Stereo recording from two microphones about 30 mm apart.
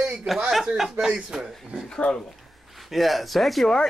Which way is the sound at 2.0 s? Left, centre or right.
Left.